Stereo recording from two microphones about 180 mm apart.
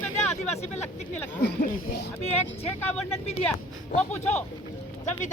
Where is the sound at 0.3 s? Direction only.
35° left (ahead or behind).